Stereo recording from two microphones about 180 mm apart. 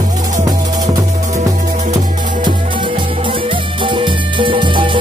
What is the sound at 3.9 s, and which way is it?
Music, 25° right (ahead or behind).